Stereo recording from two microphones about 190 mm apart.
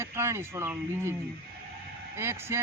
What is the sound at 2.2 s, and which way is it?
Speech, 15° right (ahead or behind).